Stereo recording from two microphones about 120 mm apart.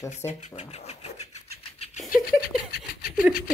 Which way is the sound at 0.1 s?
70° left (ahead or behind).